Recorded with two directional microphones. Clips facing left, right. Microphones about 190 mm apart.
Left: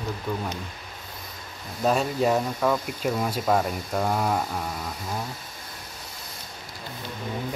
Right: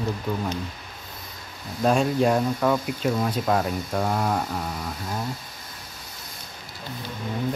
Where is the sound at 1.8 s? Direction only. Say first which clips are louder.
Right 2 dB; 5° left (ahead or behind).